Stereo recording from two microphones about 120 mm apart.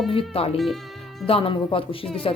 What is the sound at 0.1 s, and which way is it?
A woman's voice, 55° left (ahead or behind).